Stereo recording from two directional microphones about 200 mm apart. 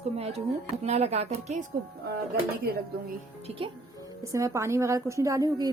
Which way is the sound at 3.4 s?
25° right (ahead or behind).